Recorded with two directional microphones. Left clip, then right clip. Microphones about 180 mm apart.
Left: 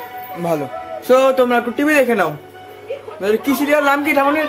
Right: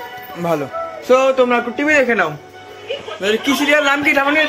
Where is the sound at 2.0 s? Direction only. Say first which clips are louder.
Even; 15° left (ahead or behind).